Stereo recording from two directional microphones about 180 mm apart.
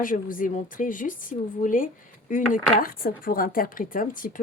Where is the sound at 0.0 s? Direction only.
50° left (ahead or behind).